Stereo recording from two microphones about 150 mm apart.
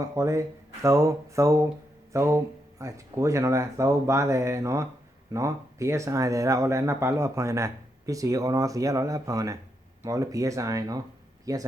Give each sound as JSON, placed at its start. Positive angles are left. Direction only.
{"t": 0.0, "sound": "speech", "side_deg": -20}